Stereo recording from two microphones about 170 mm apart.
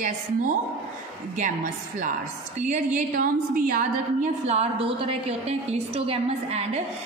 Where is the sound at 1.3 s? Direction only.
45° right (ahead or behind).